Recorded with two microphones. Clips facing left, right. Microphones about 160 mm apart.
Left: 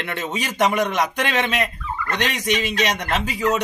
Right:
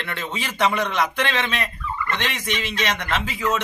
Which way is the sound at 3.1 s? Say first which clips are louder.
Left 3 dB; 40° left (ahead or behind).